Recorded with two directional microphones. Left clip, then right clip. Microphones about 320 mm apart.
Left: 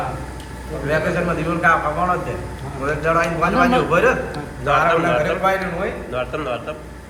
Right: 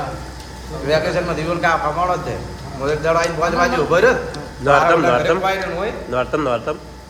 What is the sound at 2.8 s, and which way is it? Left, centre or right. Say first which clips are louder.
A man's voice: right 1 dB; right.